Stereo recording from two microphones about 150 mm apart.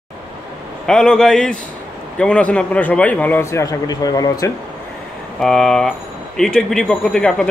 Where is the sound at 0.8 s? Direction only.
5° left (ahead or behind); by 4.5 s 25° left (ahead or behind).